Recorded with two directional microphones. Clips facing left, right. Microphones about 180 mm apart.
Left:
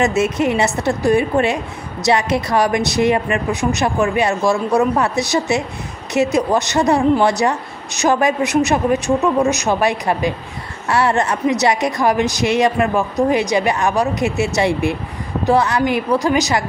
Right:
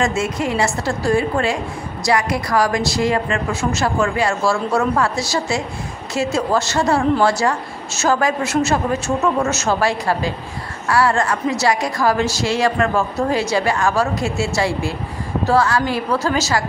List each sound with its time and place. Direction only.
0.0 s a woman's voice: 20° left (ahead or behind)